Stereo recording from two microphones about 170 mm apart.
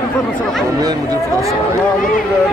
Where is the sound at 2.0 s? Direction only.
55° left (ahead or behind).